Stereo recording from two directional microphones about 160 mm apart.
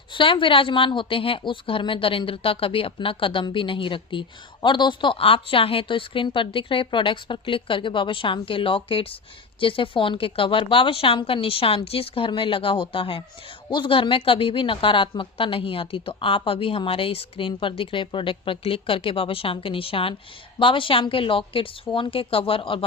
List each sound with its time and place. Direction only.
0.1 s a woman's voice: 30° left (ahead or behind)